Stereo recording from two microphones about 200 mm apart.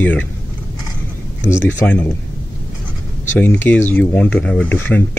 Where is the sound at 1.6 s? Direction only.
10° left (ahead or behind).